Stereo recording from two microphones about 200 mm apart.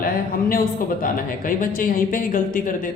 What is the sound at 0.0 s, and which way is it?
A man's voice, 45° left (ahead or behind).